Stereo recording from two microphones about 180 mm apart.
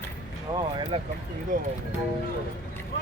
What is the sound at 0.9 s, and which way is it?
Speech, 35° right (ahead or behind).